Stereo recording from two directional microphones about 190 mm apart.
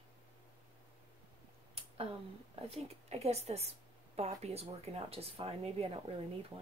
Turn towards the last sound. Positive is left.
turn(degrees=-30)  # may be behind; listen again after turning